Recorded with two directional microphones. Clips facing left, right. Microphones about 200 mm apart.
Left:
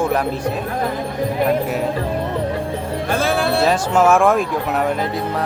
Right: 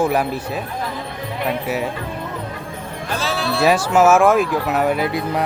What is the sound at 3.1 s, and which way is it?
Music, 55° left (ahead or behind).